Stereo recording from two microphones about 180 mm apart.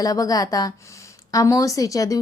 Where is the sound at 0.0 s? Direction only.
20° left (ahead or behind).